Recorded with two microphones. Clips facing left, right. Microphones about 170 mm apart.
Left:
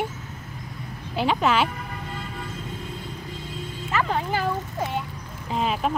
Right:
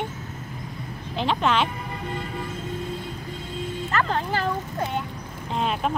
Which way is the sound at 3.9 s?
10° left (ahead or behind).